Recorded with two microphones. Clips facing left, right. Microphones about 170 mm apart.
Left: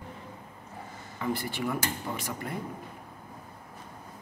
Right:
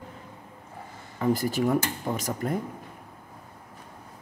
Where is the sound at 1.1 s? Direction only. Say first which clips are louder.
Right 7 dB; 40° right (ahead or behind).